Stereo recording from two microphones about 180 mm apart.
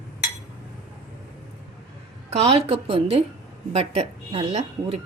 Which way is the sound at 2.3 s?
35° right (ahead or behind).